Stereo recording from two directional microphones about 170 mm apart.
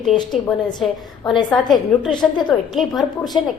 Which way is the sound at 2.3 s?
25° left (ahead or behind).